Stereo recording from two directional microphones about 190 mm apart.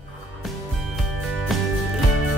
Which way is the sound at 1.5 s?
Centre (ahead or behind).